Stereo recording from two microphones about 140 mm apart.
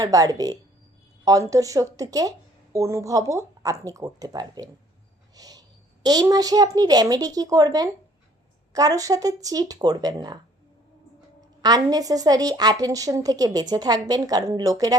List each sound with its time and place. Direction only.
0.0 s a woman's voice: 25° right (ahead or behind)
11.6 s a woman's voice: 25° right (ahead or behind)